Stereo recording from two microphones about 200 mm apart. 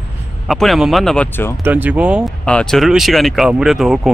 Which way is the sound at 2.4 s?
5° left (ahead or behind).